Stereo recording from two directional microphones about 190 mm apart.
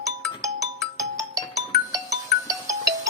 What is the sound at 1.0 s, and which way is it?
Music, 20° right (ahead or behind).